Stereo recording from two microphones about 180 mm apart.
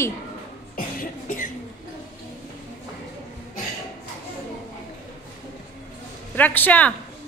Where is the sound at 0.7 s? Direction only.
50° left (ahead or behind).